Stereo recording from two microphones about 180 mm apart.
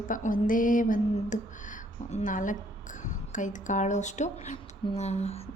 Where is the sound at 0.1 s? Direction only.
45° left (ahead or behind).